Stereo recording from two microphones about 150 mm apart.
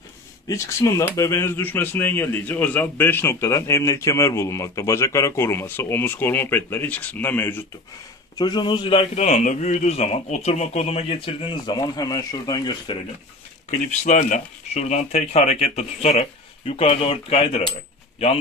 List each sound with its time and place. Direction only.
0.5 s speech: 20° left (ahead or behind)
8.4 s a man's voice: 30° left (ahead or behind)
14.0 s speech: 50° left (ahead or behind)